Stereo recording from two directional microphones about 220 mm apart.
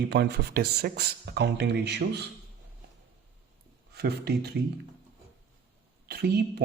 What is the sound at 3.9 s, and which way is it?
Speech, 45° right (ahead or behind).